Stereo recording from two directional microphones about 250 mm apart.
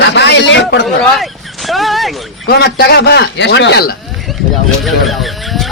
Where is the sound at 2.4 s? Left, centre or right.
Left.